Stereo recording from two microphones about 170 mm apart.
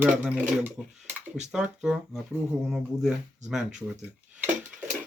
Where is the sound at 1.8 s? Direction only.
5° right (ahead or behind).